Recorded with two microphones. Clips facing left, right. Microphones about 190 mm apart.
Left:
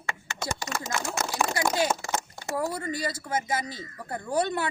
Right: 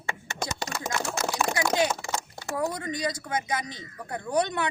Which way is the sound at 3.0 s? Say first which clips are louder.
Even; 5° left (ahead or behind).